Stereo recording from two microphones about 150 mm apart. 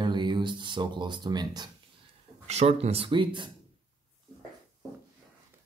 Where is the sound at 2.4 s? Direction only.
45° right (ahead or behind).